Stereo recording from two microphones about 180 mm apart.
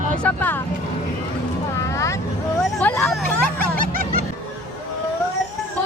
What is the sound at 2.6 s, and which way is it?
Vehicle, 5° left (ahead or behind).